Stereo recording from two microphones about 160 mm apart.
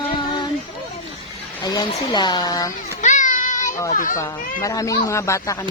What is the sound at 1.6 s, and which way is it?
Speech, 25° left (ahead or behind).